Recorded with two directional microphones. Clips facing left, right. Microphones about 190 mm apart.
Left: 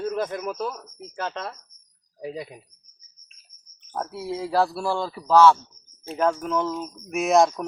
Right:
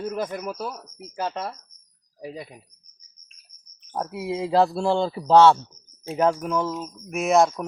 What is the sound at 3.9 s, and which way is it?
Speech, 15° right (ahead or behind).